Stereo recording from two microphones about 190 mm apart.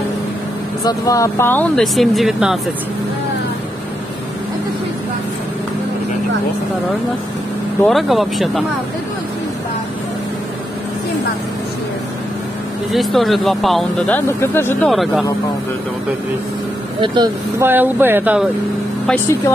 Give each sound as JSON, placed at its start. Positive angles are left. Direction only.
{"t": 0.8, "sound": "speech", "side_deg": 20}
{"t": 7.8, "sound": "speech", "side_deg": 0}
{"t": 12.9, "sound": "speech", "side_deg": 0}
{"t": 14.9, "sound": "speech", "side_deg": 0}
{"t": 17.0, "sound": "speech", "side_deg": -20}
{"t": 17.6, "sound": "speech", "side_deg": -10}